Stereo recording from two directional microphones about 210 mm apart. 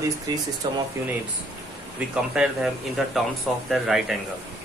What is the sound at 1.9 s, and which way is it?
Speech, 5° right (ahead or behind).